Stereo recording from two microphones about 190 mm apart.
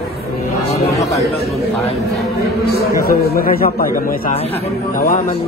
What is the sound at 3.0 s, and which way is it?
A man's voice, 50° left (ahead or behind).